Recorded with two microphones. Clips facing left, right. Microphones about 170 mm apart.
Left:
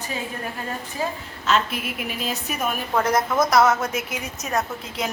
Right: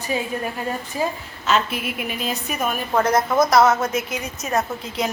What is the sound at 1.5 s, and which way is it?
A woman's voice, 5° right (ahead or behind).